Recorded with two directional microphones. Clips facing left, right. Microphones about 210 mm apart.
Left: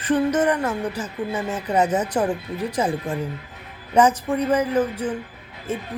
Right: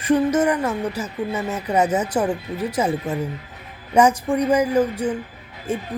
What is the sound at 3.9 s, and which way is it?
A woman's voice, 10° right (ahead or behind).